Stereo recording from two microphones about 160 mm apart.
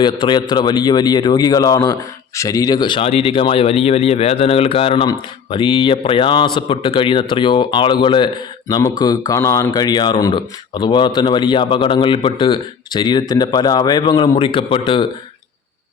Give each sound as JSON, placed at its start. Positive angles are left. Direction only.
{"t": 0.0, "sound": "speech", "side_deg": 30}